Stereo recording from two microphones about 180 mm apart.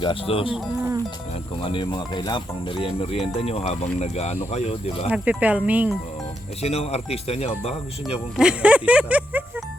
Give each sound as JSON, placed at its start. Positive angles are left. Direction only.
{"t": 0.0, "sound": "speech", "side_deg": 30}
{"t": 1.5, "sound": "speech", "side_deg": 30}
{"t": 5.0, "sound": "speech", "side_deg": -5}
{"t": 6.6, "sound": "speech", "side_deg": 35}
{"t": 8.4, "sound": "speech", "side_deg": -5}